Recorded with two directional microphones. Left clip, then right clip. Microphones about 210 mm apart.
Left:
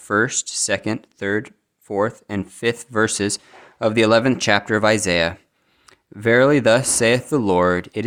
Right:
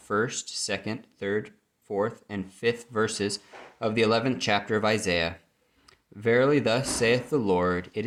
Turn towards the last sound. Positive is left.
turn(degrees=55)  # may be behind; listen again after turning